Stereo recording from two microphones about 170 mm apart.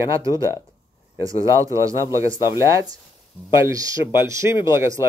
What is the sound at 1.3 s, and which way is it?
A man's voice, 20° right (ahead or behind).